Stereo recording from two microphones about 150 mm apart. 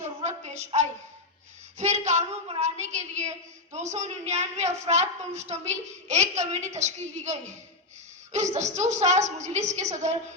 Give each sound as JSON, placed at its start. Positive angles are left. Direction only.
{"t": 0.0, "sound": "a woman's voice", "side_deg": -50}